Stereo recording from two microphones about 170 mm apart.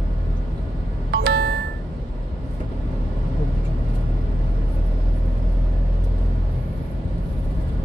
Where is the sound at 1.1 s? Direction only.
70° right (ahead or behind).